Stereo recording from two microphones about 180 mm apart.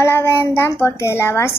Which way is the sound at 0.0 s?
15° left (ahead or behind).